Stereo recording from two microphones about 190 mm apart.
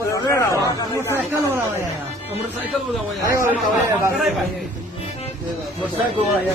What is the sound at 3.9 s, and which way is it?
Speech, 15° right (ahead or behind).